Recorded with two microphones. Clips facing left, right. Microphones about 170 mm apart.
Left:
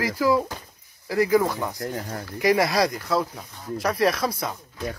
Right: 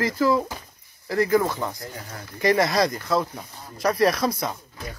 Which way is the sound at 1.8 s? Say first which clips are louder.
Left 7 dB; 55° left (ahead or behind).